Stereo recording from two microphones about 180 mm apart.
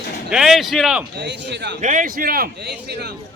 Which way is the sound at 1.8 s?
45° right (ahead or behind).